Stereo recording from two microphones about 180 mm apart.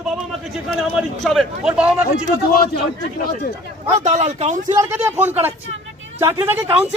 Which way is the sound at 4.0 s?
40° right (ahead or behind).